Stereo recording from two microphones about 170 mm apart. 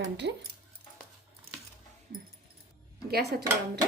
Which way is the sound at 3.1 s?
70° right (ahead or behind).